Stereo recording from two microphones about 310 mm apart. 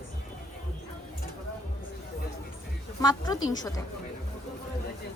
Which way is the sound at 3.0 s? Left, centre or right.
Centre.